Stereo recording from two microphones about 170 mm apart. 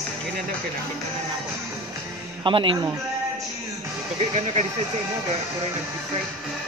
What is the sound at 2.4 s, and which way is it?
Speech, 30° right (ahead or behind).